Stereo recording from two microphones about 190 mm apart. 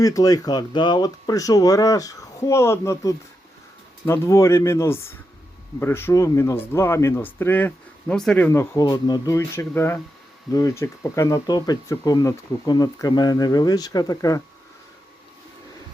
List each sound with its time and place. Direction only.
0.0 s speech: 20° left (ahead or behind); by 8.4 s 5° left (ahead or behind)
8.4 s speech: 15° left (ahead or behind)